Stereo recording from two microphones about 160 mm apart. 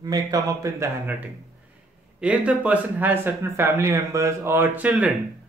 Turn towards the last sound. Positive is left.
turn(degrees=-5)  # may be behind; listen again after turning